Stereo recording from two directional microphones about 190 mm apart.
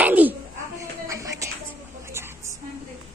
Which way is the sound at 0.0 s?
10° right (ahead or behind).